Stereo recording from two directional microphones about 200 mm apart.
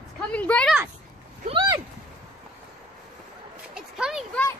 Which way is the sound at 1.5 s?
20° right (ahead or behind).